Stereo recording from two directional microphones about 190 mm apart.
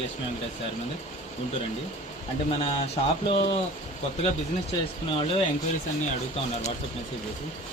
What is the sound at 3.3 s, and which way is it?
Speech, 25° left (ahead or behind).